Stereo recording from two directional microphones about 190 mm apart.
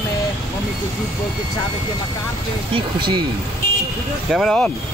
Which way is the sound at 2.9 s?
25° right (ahead or behind).